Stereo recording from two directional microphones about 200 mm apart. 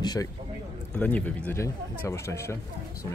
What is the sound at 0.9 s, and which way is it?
A man's voice, 5° left (ahead or behind).